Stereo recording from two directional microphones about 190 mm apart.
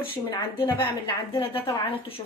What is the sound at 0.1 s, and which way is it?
A woman's voice, 30° left (ahead or behind).